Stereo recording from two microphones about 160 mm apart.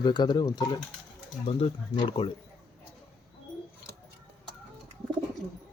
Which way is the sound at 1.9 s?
35° left (ahead or behind).